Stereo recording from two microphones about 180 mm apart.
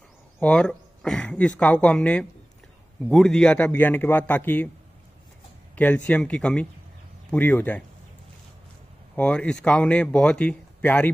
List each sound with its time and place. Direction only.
0.4 s speech: 5° left (ahead or behind)
5.8 s speech: 10° left (ahead or behind)
9.1 s speech: 5° left (ahead or behind)